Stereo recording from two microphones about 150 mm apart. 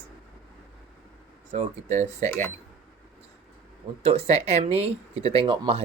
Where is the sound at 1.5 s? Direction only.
50° right (ahead or behind).